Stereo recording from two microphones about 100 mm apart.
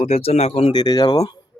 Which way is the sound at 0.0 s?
90° left.